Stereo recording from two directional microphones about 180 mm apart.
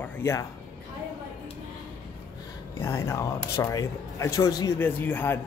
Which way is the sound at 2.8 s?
15° left (ahead or behind).